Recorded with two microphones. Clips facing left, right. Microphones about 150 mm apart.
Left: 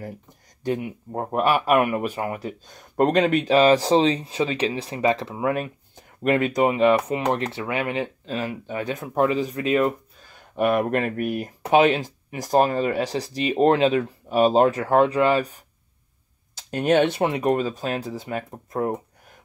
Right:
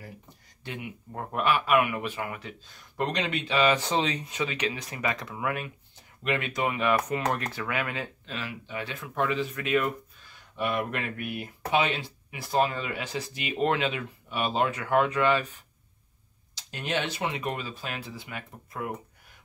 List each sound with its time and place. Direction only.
0.7 s speech: 40° left (ahead or behind)
5.9 s speech: 45° left (ahead or behind)
6.7 s speech: 30° left (ahead or behind)
8.4 s speech: 45° left (ahead or behind); by 9.9 s 30° left (ahead or behind)
10.3 s speech: 50° left (ahead or behind)
16.5 s speech: 55° left (ahead or behind)